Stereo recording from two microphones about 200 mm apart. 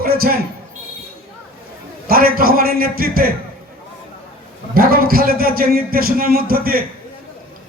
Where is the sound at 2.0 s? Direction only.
50° right (ahead or behind).